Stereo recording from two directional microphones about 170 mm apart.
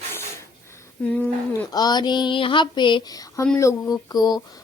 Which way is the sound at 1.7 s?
25° left (ahead or behind).